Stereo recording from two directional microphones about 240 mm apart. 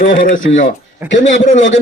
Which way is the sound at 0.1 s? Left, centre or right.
Left.